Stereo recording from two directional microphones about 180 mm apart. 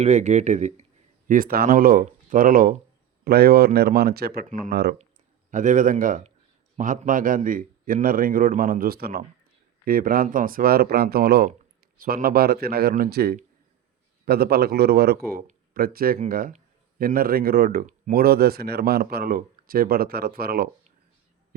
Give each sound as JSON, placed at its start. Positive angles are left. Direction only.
{"t": 0.0, "sound": "speech", "side_deg": -40}
{"t": 1.3, "sound": "a man's voice", "side_deg": -55}
{"t": 5.5, "sound": "a man's voice", "side_deg": -45}